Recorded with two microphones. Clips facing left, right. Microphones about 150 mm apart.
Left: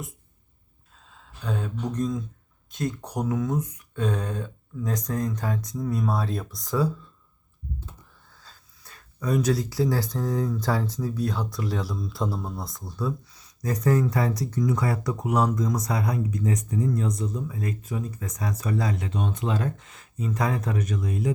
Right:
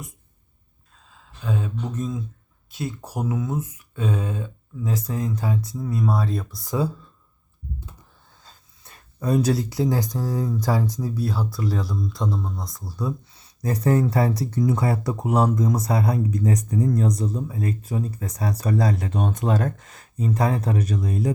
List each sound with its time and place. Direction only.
1.1 s speech: centre (ahead or behind)
8.3 s speech: 25° right (ahead or behind); by 13.0 s centre (ahead or behind)
13.3 s speech: 30° right (ahead or behind)